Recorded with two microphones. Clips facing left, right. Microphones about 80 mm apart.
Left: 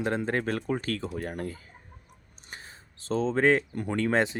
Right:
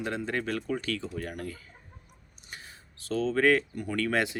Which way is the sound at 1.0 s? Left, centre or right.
Left.